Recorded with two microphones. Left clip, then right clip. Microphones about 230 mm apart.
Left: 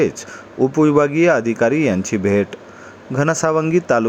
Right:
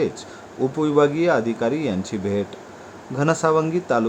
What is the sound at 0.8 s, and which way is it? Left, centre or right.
Speech, centre.